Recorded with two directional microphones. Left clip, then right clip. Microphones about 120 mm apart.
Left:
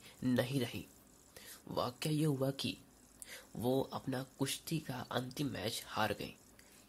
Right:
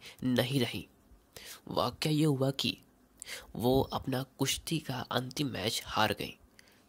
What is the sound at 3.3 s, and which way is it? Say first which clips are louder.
Speech: right 7 dB; 50° right (ahead or behind).